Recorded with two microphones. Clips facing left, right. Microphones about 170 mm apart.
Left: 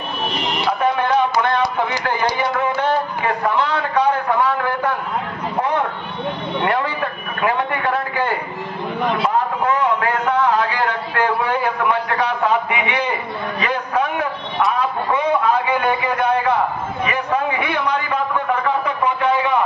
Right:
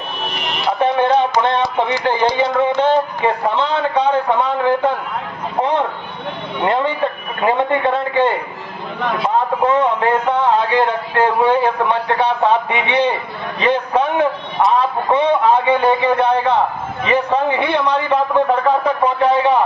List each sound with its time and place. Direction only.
0.7 s music: 25° right (ahead or behind)
1.4 s a man's voice: 25° right (ahead or behind)
6.6 s a man's voice: 25° right (ahead or behind)
9.7 s a man's voice: 25° right (ahead or behind)